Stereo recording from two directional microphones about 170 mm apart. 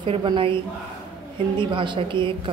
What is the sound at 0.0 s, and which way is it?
Speech, 30° right (ahead or behind).